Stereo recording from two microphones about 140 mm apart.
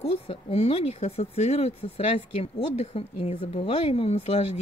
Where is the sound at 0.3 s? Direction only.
45° left (ahead or behind).